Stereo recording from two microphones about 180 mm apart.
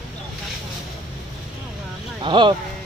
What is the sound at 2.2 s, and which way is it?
Speech, 25° right (ahead or behind).